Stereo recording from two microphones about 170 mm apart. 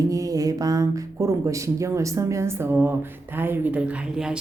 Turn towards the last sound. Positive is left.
turn(degrees=-5)  # may be behind; listen again after turning